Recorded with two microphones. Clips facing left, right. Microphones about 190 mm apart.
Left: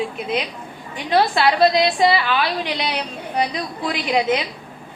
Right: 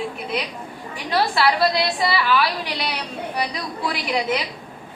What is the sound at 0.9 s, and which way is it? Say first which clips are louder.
A woman's voice: left 4 dB; 25° left (ahead or behind).